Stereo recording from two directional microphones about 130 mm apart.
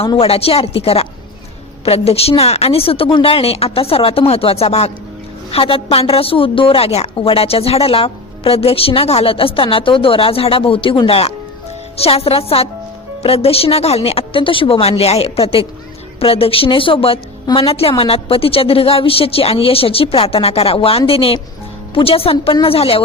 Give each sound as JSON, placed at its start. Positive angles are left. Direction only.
{"t": 0.2, "sound": "a woman's voice", "side_deg": 50}